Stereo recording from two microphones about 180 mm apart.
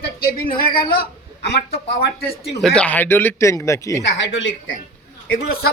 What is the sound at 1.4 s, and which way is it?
Speech, 70° left (ahead or behind).